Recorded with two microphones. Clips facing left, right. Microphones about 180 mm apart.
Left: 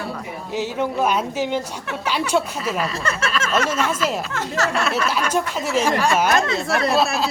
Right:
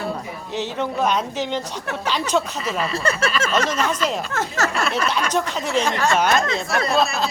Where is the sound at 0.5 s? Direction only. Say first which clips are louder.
Left 2 dB; 10° left (ahead or behind).